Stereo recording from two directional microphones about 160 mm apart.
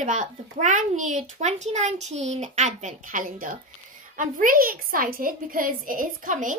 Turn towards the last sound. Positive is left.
turn(degrees=-60)  # may be behind; listen again after turning